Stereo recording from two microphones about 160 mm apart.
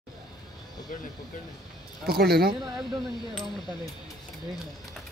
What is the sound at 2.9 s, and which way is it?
Speech, centre (ahead or behind).